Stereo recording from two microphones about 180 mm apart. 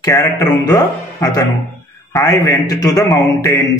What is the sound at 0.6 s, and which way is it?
A man's voice, 20° left (ahead or behind).